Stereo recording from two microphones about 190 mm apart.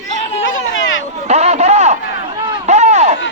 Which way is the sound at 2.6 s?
35° right (ahead or behind).